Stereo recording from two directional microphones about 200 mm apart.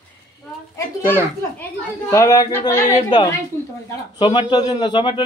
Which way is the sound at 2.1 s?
15° left (ahead or behind).